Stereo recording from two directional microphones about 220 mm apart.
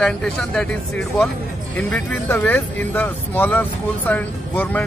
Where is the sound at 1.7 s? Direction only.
5° left (ahead or behind).